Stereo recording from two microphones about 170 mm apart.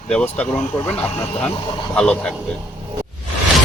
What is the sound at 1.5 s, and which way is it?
Speech, 30° left (ahead or behind).